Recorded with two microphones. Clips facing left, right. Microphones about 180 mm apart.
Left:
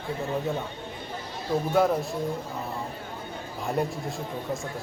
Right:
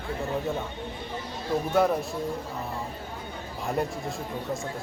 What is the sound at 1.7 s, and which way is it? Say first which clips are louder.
Speech: even; centre (ahead or behind).